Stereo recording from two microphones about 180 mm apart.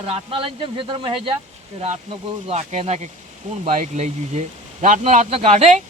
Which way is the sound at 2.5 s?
35° right (ahead or behind).